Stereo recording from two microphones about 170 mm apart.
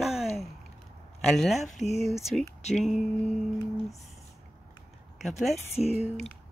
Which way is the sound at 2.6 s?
40° left (ahead or behind).